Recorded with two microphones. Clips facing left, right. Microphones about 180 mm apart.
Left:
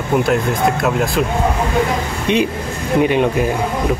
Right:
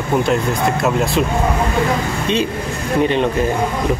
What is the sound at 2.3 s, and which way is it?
Speech, 15° left (ahead or behind).